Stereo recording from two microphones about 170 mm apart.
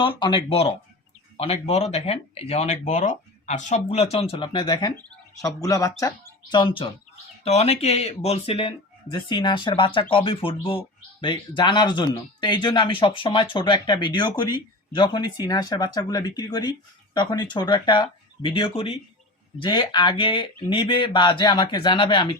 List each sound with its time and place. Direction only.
0.0 s speech: 25° left (ahead or behind)
7.4 s speech: 40° left (ahead or behind)